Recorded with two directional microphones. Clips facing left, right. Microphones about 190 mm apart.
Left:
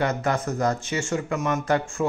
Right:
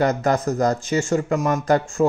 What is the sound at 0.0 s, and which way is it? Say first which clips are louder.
A man's voice: right 5 dB; 40° right (ahead or behind).